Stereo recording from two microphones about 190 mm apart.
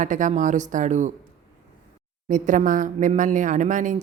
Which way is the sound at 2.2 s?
40° right (ahead or behind).